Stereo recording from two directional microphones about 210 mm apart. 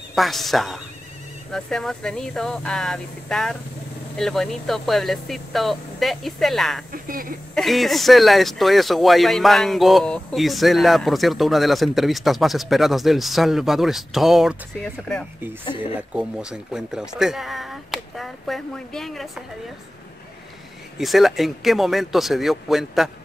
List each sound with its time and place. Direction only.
0.1 s speech: centre (ahead or behind)
6.9 s speech: 40° right (ahead or behind)
7.5 s speech: centre (ahead or behind)
15.7 s speech: 5° right (ahead or behind)
21.0 s speech: centre (ahead or behind)